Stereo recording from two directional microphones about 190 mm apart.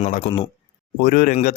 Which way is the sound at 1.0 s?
45° left (ahead or behind).